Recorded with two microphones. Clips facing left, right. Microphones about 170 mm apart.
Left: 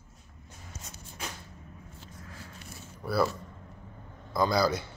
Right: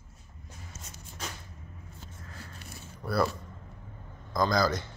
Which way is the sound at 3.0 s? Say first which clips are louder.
Left 1 dB; 5° left (ahead or behind).